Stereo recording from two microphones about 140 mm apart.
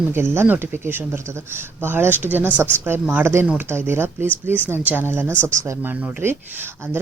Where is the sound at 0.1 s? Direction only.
15° right (ahead or behind).